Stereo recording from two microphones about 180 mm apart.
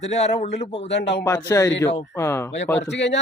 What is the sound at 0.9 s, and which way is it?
Speech, 70° left (ahead or behind).